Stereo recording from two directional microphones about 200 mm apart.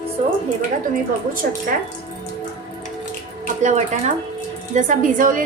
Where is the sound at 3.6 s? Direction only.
35° right (ahead or behind).